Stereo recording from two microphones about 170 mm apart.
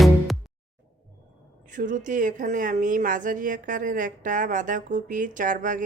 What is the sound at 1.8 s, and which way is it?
Speech, 50° right (ahead or behind).